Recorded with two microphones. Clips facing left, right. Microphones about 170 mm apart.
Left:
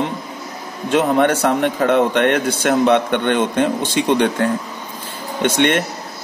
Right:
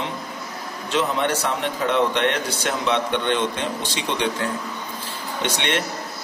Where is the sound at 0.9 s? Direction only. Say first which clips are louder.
Left 7 dB; 55° left (ahead or behind).